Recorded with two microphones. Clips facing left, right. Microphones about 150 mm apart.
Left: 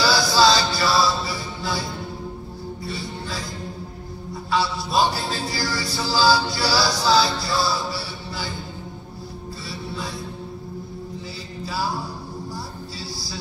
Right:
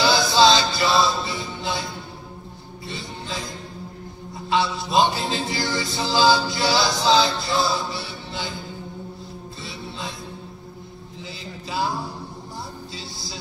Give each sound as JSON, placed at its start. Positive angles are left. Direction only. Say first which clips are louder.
{"t": 0.0, "sound": "music", "louder": "right 1 dB", "side_deg": -20}
{"t": 2.9, "sound": "music", "louder": "right 1 dB", "side_deg": -20}
{"t": 4.5, "sound": "music", "louder": "right 1 dB", "side_deg": -20}
{"t": 9.7, "sound": "music", "louder": "left 2 dB", "side_deg": -20}